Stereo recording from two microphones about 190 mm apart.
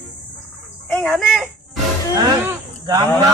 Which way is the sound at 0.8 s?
10° left (ahead or behind).